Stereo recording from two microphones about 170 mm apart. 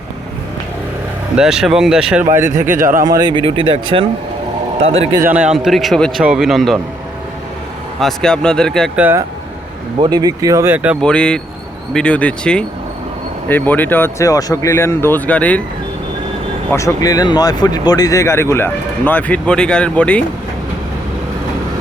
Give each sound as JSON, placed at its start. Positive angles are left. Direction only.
{"t": 1.4, "sound": "a man's voice", "side_deg": -5}
{"t": 2.8, "sound": "speech", "side_deg": -50}
{"t": 3.1, "sound": "a man's voice", "side_deg": -25}
{"t": 5.3, "sound": "a man's voice", "side_deg": -5}
{"t": 7.9, "sound": "a man's voice", "side_deg": 5}
{"t": 9.0, "sound": "speech", "side_deg": -10}
{"t": 10.0, "sound": "speech", "side_deg": -25}
{"t": 11.0, "sound": "a man's voice", "side_deg": 5}
{"t": 16.7, "sound": "speech", "side_deg": 20}